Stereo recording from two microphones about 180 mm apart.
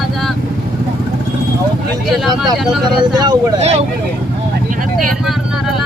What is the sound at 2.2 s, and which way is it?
Speech, centre (ahead or behind).